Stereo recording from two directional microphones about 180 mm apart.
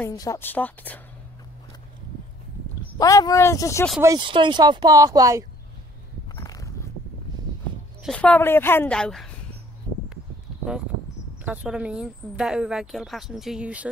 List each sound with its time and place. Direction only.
0.0 s a woman's voice: 20° left (ahead or behind)
3.0 s a woman's voice: 20° left (ahead or behind)
4.0 s speech: 25° right (ahead or behind)
6.3 s a sound: 20° left (ahead or behind)
8.0 s a woman's voice: 5° left (ahead or behind)
11.4 s speech: 5° right (ahead or behind)